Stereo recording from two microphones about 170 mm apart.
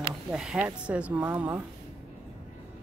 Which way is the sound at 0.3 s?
5° right (ahead or behind).